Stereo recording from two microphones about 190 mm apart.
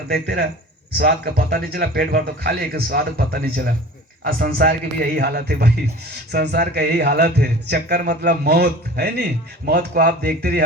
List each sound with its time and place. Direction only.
0.1 s a man's voice: 55° right (ahead or behind)